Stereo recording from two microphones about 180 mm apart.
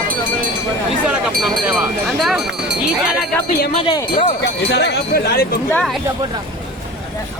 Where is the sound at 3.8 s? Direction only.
25° left (ahead or behind).